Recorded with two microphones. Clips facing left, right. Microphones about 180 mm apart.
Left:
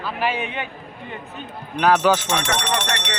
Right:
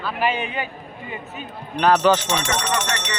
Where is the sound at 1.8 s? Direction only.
10° left (ahead or behind).